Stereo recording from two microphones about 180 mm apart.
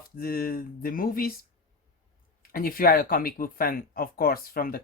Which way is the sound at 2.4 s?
55° left (ahead or behind).